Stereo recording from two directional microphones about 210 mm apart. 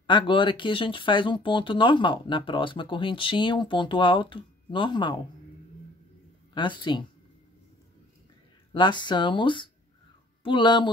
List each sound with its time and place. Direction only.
0.0 s speech: 25° left (ahead or behind)
6.5 s speech: 20° left (ahead or behind)
8.7 s speech: 20° left (ahead or behind)